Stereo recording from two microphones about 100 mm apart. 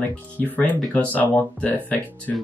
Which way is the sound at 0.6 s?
15° left (ahead or behind).